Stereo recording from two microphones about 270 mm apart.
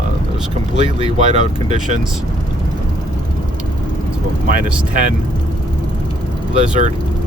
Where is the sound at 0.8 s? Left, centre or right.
Right.